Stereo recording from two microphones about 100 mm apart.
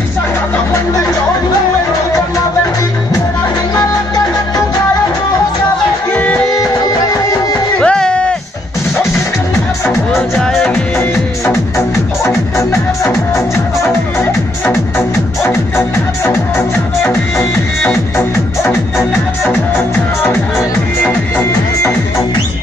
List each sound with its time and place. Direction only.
6.1 s music: 15° left (ahead or behind)
7.8 s music: 10° left (ahead or behind)
9.8 s music: 5° left (ahead or behind)
12.2 s music: 30° left (ahead or behind)
18.6 s music: 25° left (ahead or behind)
21.0 s music: 15° left (ahead or behind)